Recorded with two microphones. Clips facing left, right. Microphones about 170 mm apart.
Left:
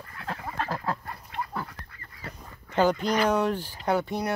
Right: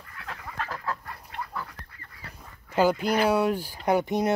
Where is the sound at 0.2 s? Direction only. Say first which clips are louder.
Left 4 dB; 35° left (ahead or behind).